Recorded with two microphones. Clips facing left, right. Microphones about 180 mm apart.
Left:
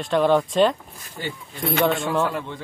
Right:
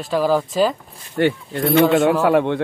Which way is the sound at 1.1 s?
70° right (ahead or behind).